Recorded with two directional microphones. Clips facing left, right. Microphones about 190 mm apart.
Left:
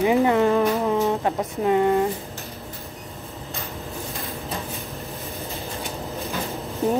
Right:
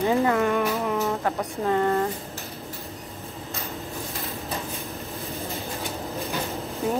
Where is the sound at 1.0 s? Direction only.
20° left (ahead or behind).